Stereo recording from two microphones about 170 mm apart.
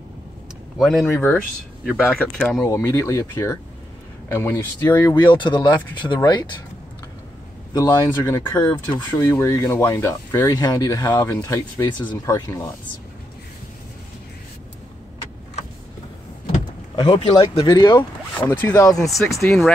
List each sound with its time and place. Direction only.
0.7 s speech: centre (ahead or behind)
2.0 s speech: 5° left (ahead or behind)
2.7 s speech: 15° left (ahead or behind)
5.1 s speech: 25° left (ahead or behind)
7.7 s speech: 20° left (ahead or behind)
16.9 s speech: 30° left (ahead or behind)
18.4 s speech: 10° left (ahead or behind)